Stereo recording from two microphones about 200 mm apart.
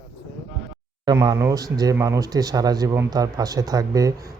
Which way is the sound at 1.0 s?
20° right (ahead or behind).